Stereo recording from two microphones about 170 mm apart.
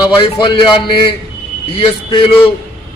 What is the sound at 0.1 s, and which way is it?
A man's voice, 30° left (ahead or behind).